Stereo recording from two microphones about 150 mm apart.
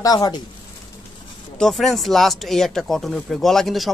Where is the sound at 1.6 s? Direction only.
Centre (ahead or behind).